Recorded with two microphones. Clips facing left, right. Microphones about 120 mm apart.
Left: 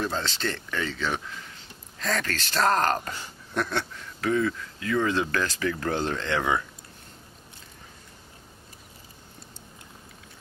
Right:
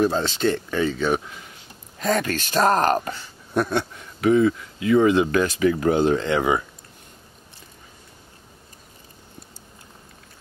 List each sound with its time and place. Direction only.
0.0 s speech: 15° right (ahead or behind)